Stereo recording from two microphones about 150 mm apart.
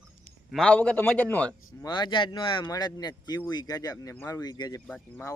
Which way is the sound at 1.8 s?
30° left (ahead or behind).